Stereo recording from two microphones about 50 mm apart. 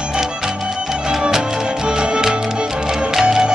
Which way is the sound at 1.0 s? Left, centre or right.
Centre.